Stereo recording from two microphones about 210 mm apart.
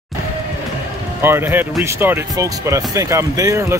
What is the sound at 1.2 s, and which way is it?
Speech, 10° right (ahead or behind).